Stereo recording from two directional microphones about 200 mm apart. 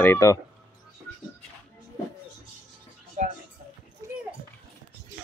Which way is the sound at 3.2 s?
40° right (ahead or behind).